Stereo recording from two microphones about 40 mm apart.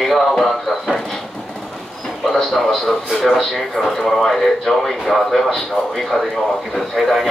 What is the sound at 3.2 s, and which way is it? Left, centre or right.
Speech, centre.